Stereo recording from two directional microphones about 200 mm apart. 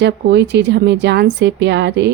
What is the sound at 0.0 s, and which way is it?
Speech, 60° right (ahead or behind).